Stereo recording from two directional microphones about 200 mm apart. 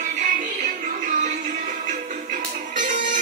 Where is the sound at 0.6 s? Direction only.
40° right (ahead or behind).